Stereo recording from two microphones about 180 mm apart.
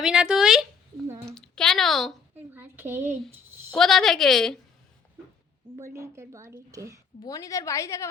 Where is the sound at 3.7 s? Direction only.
Centre (ahead or behind).